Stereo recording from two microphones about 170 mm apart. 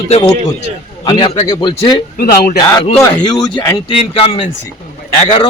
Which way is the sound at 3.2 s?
25° left (ahead or behind).